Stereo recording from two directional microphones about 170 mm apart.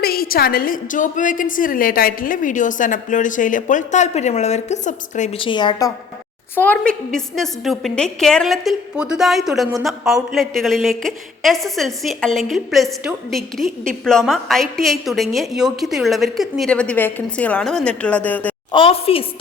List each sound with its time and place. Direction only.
0.0 s a woman's voice: 60° left (ahead or behind); by 5.4 s 45° left (ahead or behind)
5.4 s a woman's voice: 30° left (ahead or behind)
6.6 s a woman's voice: 10° left (ahead or behind)
18.7 s a woman's voice: 30° left (ahead or behind)